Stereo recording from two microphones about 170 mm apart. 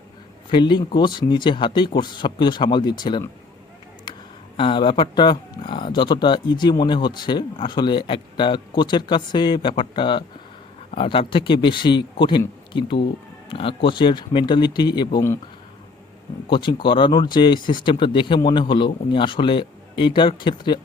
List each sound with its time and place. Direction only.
0.5 s speech: 25° left (ahead or behind)
4.1 s a sound: 25° left (ahead or behind)
4.5 s speech: 30° left (ahead or behind)
16.5 s speech: 30° left (ahead or behind)